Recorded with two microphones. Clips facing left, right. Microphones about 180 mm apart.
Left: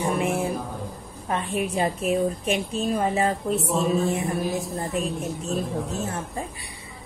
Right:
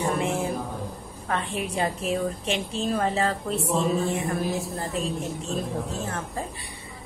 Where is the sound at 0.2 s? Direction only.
15° left (ahead or behind).